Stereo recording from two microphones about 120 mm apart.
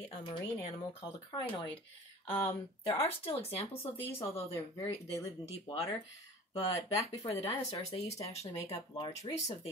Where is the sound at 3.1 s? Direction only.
55° left (ahead or behind).